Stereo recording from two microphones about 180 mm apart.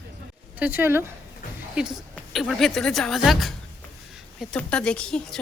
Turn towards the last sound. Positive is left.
turn(degrees=5)  # may be behind; listen again after turning